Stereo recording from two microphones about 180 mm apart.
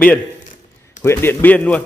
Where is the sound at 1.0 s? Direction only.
10° left (ahead or behind).